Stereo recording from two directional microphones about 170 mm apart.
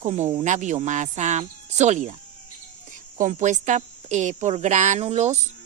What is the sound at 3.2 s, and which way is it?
Speech, 45° right (ahead or behind).